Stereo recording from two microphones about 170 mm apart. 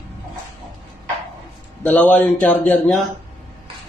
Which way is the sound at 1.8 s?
10° left (ahead or behind).